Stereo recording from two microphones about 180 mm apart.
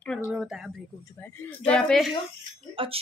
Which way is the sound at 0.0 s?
10° left (ahead or behind).